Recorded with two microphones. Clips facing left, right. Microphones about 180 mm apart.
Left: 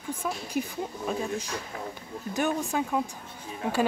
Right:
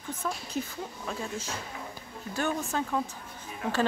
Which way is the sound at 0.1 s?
10° left (ahead or behind).